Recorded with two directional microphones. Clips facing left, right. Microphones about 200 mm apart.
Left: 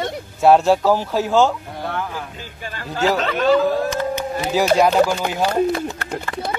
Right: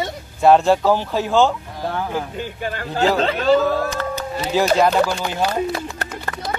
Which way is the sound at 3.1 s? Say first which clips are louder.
Left 1 dB; 30° right (ahead or behind).